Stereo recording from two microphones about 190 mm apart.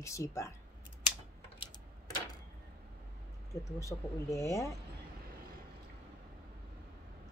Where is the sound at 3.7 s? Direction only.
15° left (ahead or behind).